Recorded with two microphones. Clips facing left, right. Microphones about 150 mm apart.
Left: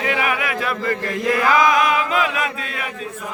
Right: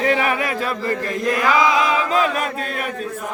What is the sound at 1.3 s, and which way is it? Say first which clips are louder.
Chant: left 1 dB; 20° right (ahead or behind).